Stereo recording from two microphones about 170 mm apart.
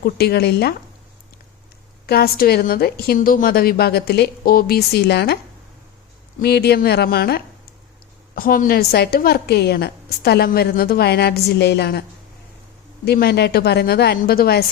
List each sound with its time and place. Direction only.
0.0 s a woman's voice: 70° left (ahead or behind)
2.0 s a woman's voice: 65° left (ahead or behind)
6.4 s a woman's voice: 70° left (ahead or behind)
8.4 s a woman's voice: 60° left (ahead or behind); by 12.0 s 75° left (ahead or behind)
13.1 s a woman's voice: 70° left (ahead or behind)